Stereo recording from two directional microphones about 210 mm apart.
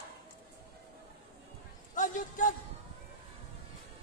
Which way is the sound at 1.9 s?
40° left (ahead or behind).